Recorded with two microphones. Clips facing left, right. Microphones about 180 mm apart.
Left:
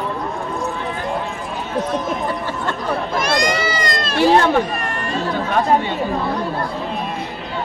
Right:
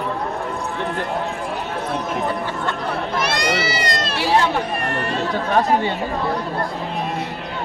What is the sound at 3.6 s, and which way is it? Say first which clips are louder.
Run: left 1 dB; 50° left (ahead or behind).